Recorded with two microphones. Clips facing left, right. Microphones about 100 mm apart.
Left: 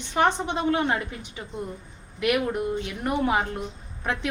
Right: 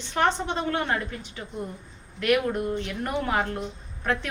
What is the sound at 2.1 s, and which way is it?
A woman's voice, 10° left (ahead or behind).